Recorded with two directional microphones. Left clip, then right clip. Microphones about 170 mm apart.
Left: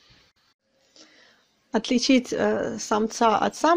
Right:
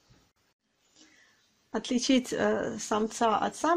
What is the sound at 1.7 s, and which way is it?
Speech, 30° left (ahead or behind).